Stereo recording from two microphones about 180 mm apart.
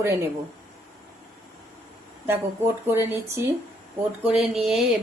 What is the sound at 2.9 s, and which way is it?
Speech, 15° right (ahead or behind).